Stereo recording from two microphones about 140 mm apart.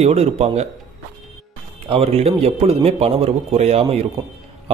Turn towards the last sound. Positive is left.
turn(degrees=-45)  # may be behind; listen again after turning